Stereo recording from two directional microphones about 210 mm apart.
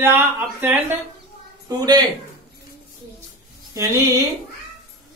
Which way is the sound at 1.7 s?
20° right (ahead or behind).